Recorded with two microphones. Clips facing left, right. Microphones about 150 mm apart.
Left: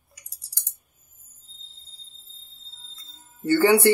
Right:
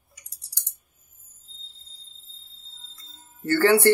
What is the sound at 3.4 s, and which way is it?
Music, 15° left (ahead or behind).